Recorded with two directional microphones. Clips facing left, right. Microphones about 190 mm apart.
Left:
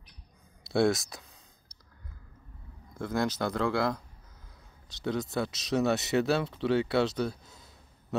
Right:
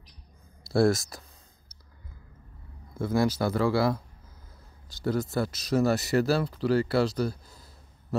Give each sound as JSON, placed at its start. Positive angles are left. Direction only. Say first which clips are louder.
{"t": 0.7, "sound": "speech", "louder": "right 3 dB", "side_deg": 0}
{"t": 3.0, "sound": "speech", "louder": "right 4 dB", "side_deg": -5}
{"t": 5.0, "sound": "speech", "louder": "right 3 dB", "side_deg": 0}